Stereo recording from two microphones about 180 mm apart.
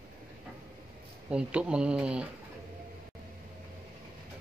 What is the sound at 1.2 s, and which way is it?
Speech, 5° right (ahead or behind).